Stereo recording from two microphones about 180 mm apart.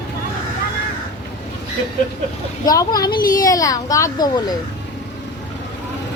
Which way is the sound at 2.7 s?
20° left (ahead or behind).